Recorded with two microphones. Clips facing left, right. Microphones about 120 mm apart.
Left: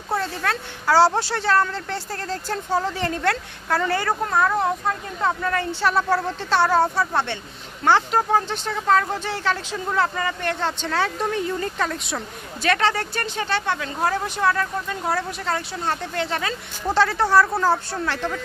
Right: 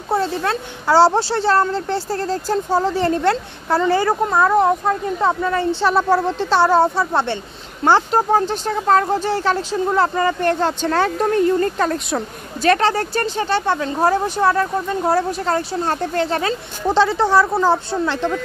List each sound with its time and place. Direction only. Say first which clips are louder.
0.1 s speech: right 5 dB; 25° right (ahead or behind)
5.2 s speech: right 3 dB; 25° right (ahead or behind)